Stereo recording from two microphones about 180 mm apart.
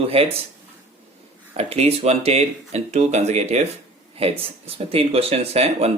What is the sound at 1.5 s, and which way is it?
Speech, 35° right (ahead or behind).